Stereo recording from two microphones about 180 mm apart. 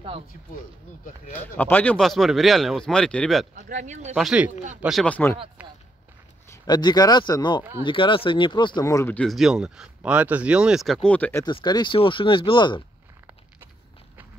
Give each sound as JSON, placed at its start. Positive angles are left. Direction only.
{"t": 1.6, "sound": "speech", "side_deg": 10}
{"t": 3.5, "sound": "speech", "side_deg": -45}
{"t": 4.1, "sound": "speech", "side_deg": -5}
{"t": 6.6, "sound": "speech", "side_deg": 25}
{"t": 11.4, "sound": "speech", "side_deg": 25}